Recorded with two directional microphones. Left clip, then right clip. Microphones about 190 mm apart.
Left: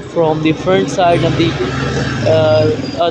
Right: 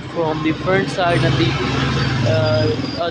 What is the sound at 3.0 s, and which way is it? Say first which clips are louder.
Speech: left 9 dB; 15° left (ahead or behind).